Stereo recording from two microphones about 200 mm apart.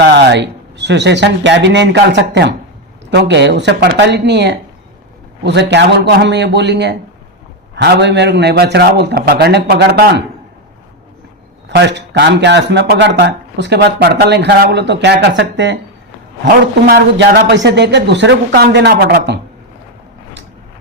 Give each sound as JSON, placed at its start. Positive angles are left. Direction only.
{"t": 0.1, "sound": "speech", "side_deg": -60}
{"t": 11.7, "sound": "speech", "side_deg": -60}
{"t": 16.8, "sound": "speech", "side_deg": -50}